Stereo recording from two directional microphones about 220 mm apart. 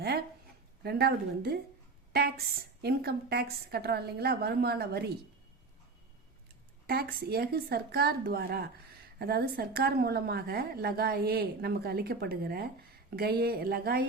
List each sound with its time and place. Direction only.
0.8 s a woman's voice: 45° right (ahead or behind)
6.8 s a woman's voice: 45° right (ahead or behind)